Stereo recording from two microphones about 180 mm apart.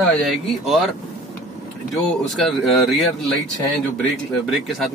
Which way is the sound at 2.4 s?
Centre (ahead or behind).